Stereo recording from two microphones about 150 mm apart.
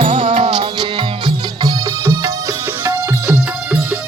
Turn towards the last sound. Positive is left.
turn(degrees=-20)  # may be behind; listen again after turning